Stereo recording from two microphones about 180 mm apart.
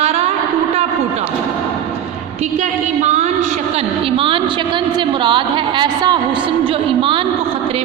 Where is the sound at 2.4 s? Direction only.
40° right (ahead or behind).